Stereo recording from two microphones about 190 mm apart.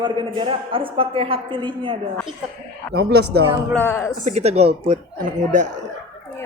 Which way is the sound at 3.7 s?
10° left (ahead or behind).